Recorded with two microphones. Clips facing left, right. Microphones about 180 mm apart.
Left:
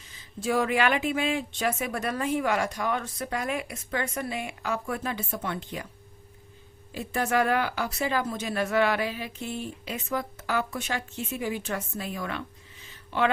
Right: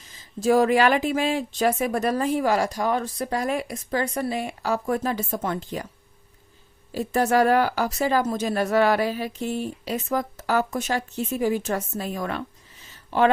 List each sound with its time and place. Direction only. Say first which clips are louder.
0.3 s speech: right 7 dB; 40° right (ahead or behind)
6.9 s speech: right 6 dB; 40° right (ahead or behind)